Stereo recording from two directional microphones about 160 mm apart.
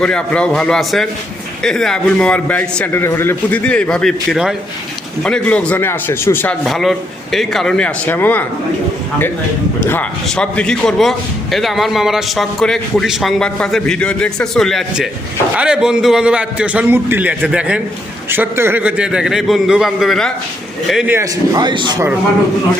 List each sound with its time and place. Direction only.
0.0 s a man's voice: 5° left (ahead or behind)
6.7 s a man's voice: centre (ahead or behind)
9.8 s a man's voice: 15° left (ahead or behind); by 21.2 s 5° right (ahead or behind)
21.2 s a man's voice: 25° right (ahead or behind)